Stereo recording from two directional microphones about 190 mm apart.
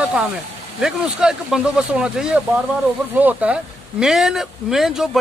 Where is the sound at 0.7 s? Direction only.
5° right (ahead or behind).